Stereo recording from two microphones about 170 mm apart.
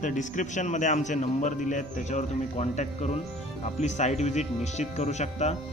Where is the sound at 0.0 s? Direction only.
45° left (ahead or behind).